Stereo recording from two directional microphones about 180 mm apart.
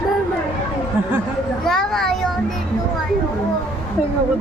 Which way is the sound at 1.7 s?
Centre (ahead or behind).